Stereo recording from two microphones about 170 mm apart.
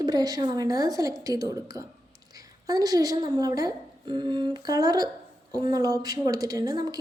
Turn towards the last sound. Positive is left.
turn(degrees=-20)  # may be behind; listen again after turning